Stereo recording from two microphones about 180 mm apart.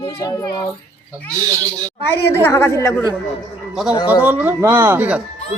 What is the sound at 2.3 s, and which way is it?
Speech, 15° left (ahead or behind).